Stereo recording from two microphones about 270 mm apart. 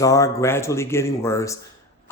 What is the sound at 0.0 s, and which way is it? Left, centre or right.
Speech, centre.